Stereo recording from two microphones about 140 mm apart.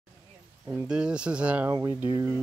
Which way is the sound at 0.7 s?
10° right (ahead or behind).